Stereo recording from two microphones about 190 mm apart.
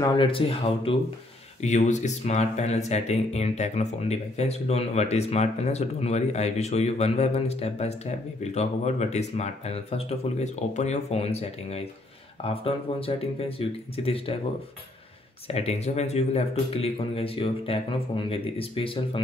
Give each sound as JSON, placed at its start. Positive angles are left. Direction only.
{"t": 0.0, "sound": "speech", "side_deg": 25}
{"t": 15.4, "sound": "speech", "side_deg": 35}